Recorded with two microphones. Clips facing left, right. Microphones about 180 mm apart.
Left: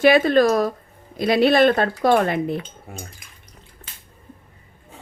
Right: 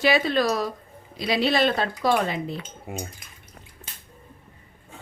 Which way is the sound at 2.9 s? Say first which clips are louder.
Right 4 dB; 15° right (ahead or behind).